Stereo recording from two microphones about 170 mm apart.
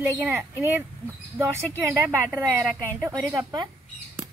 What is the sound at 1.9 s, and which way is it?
A woman's voice, 15° right (ahead or behind).